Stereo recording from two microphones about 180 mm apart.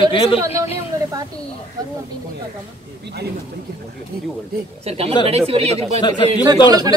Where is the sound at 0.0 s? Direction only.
30° left (ahead or behind).